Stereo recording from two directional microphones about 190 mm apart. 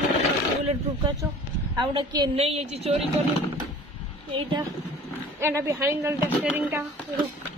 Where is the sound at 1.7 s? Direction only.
25° right (ahead or behind).